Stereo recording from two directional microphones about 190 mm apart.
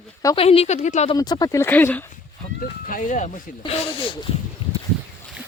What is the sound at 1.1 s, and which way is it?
Speech, 20° left (ahead or behind).